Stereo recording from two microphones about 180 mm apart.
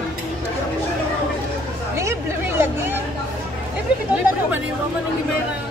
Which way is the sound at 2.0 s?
15° right (ahead or behind).